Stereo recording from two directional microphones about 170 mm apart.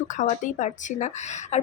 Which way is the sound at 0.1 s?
45° left (ahead or behind).